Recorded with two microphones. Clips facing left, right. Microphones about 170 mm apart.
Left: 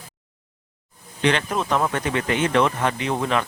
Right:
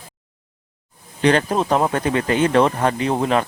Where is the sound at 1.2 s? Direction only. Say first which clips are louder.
Right 5 dB; 40° right (ahead or behind).